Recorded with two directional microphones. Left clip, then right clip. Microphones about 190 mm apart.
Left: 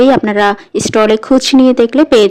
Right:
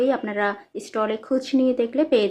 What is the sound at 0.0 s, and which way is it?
Speech, 50° left (ahead or behind).